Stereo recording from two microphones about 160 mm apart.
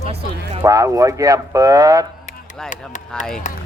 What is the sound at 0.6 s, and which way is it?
Speech, 20° right (ahead or behind).